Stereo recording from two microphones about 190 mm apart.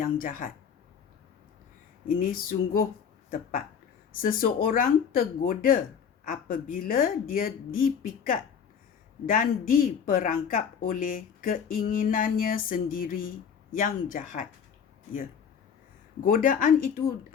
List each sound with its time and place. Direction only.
0.0 s speech: 45° left (ahead or behind)
2.0 s speech: 45° left (ahead or behind)
16.2 s speech: 45° left (ahead or behind)